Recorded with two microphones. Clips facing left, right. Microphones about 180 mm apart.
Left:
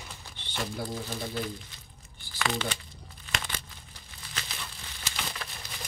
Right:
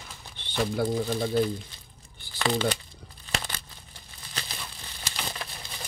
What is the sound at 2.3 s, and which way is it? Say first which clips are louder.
Speech: right 5 dB; 35° right (ahead or behind).